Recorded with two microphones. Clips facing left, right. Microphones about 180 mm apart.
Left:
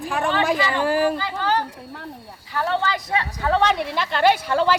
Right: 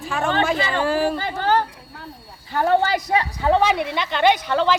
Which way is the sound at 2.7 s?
45° right (ahead or behind).